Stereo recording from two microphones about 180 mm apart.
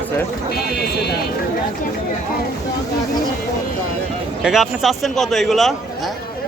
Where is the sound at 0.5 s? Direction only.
60° left (ahead or behind).